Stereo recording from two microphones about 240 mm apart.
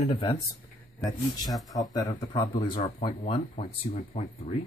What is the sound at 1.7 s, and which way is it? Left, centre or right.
Speech, centre.